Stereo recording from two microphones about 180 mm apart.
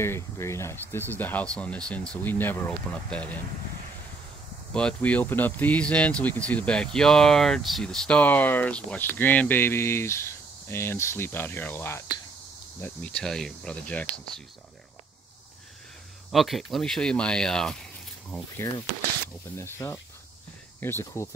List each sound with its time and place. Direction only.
0.0 s speech: 15° left (ahead or behind)
4.7 s speech: 5° left (ahead or behind)
16.3 s speech: centre (ahead or behind)
18.6 s speech: 20° left (ahead or behind)